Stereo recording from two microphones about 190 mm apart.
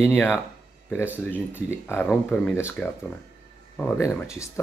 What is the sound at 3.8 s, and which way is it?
Speech, 10° left (ahead or behind).